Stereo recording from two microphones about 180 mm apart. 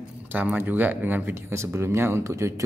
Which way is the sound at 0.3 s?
10° right (ahead or behind).